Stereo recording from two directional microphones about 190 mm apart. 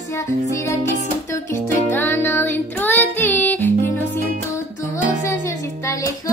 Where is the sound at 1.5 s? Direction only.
10° left (ahead or behind).